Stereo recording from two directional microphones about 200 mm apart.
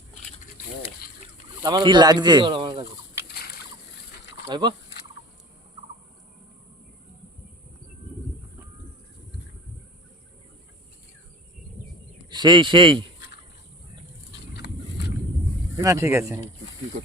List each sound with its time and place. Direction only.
1.6 s speech: 20° right (ahead or behind)
3.2 s a sound: 50° left (ahead or behind)
4.4 s speech: 20° right (ahead or behind)
12.3 s speech: 20° right (ahead or behind)
14.5 s a sound: 55° left (ahead or behind)
15.8 s speech: 15° right (ahead or behind)